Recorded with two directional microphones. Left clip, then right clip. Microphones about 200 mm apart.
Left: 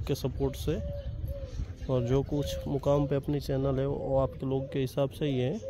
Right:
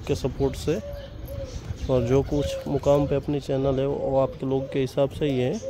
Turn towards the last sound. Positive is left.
turn(degrees=0)  # may be behind; listen again after turning